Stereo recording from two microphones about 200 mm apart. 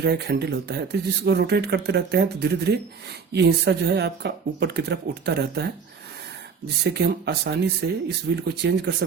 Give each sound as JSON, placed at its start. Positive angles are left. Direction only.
{"t": 0.0, "sound": "speech", "side_deg": -55}
{"t": 6.8, "sound": "speech", "side_deg": -55}